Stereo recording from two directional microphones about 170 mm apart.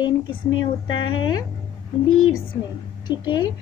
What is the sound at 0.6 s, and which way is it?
Speech, 25° left (ahead or behind).